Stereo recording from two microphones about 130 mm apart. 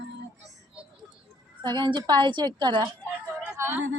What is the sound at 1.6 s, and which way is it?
A woman's voice, 35° right (ahead or behind).